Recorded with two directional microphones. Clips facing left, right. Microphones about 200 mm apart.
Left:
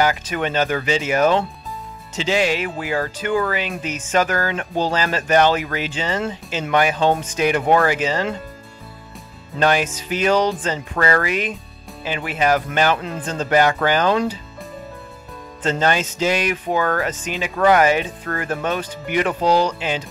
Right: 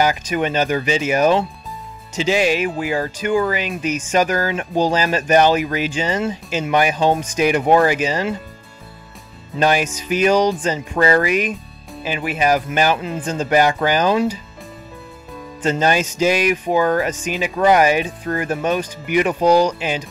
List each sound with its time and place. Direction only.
0.3 s speech: 15° right (ahead or behind)
9.6 s speech: 15° right (ahead or behind)
15.6 s speech: 15° right (ahead or behind)